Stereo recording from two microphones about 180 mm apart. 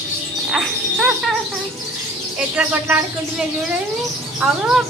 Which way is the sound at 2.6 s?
5° right (ahead or behind).